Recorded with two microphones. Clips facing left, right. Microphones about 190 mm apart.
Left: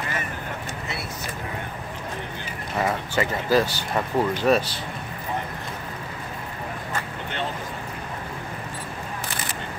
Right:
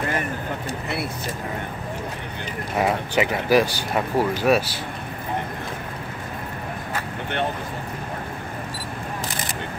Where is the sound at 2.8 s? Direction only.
15° right (ahead or behind).